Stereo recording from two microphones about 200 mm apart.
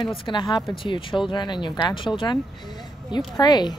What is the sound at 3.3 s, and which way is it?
Speech, 20° left (ahead or behind).